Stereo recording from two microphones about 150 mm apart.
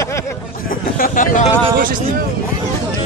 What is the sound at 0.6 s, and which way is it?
Speech, 70° left (ahead or behind).